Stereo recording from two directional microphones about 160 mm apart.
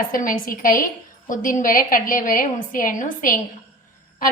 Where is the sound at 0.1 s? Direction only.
60° left (ahead or behind).